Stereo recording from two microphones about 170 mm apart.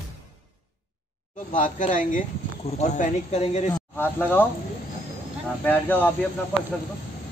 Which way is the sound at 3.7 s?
10° left (ahead or behind).